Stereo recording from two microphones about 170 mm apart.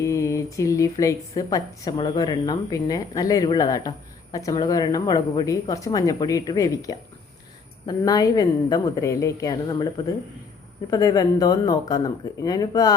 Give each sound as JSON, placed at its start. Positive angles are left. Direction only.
{"t": 0.0, "sound": "a woman's voice", "side_deg": 20}